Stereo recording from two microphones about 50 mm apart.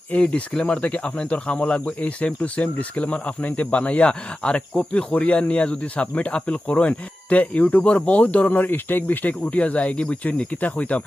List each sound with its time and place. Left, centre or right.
0.1 s speech: left